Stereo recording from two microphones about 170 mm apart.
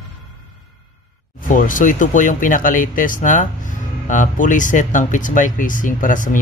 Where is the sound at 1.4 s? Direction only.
50° left (ahead or behind).